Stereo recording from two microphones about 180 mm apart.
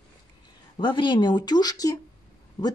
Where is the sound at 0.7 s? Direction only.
25° left (ahead or behind).